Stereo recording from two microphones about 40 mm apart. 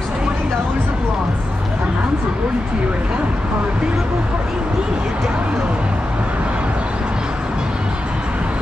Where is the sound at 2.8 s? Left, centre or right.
Right.